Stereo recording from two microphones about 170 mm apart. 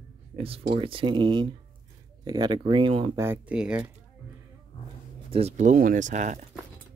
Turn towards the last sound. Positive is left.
turn(degrees=-45)  # may be behind; listen again after turning